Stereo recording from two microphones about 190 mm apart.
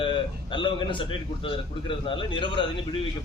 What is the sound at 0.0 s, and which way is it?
Speech, 25° left (ahead or behind).